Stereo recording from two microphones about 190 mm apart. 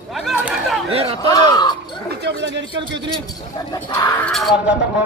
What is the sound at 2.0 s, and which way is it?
Speech, 65° right (ahead or behind).